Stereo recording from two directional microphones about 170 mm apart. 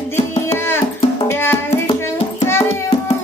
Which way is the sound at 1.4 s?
15° left (ahead or behind).